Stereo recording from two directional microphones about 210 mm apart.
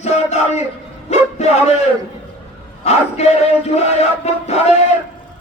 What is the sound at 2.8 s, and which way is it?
Speech, 30° left (ahead or behind).